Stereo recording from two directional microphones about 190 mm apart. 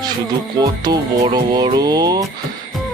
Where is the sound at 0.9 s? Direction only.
20° right (ahead or behind).